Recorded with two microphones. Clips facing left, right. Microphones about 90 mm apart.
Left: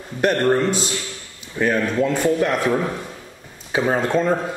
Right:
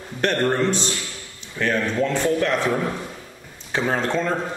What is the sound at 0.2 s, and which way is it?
Speech, 5° left (ahead or behind).